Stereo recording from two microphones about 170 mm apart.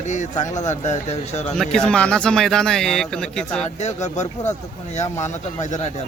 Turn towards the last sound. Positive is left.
turn(degrees=45)  # may be behind; listen again after turning